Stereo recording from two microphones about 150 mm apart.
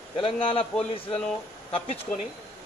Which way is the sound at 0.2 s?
35° left (ahead or behind).